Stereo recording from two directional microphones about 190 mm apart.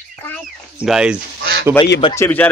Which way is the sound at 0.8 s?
5° right (ahead or behind).